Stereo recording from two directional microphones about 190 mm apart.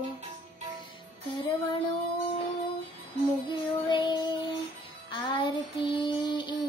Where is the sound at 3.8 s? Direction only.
25° left (ahead or behind).